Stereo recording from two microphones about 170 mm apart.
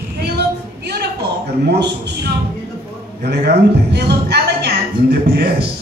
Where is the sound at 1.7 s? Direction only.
75° right (ahead or behind).